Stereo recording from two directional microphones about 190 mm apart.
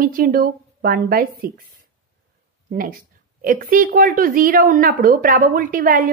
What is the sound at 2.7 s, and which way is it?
A woman's voice, 50° right (ahead or behind).